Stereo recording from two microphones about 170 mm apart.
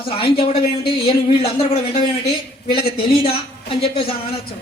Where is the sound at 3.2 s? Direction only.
35° left (ahead or behind).